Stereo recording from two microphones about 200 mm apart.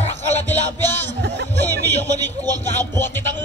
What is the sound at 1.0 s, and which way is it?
Music, 60° right (ahead or behind).